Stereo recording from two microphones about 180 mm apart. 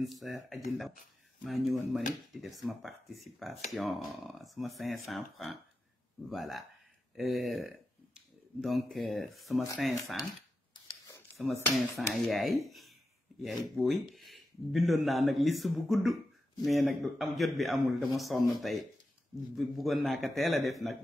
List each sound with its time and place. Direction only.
0.0 s speech: centre (ahead or behind)
10.7 s a sound: 15° left (ahead or behind)
12.1 s speech: centre (ahead or behind)